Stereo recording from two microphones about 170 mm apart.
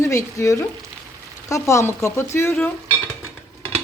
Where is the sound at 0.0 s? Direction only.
15° left (ahead or behind).